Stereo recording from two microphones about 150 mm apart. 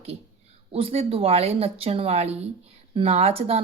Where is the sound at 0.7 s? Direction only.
40° right (ahead or behind).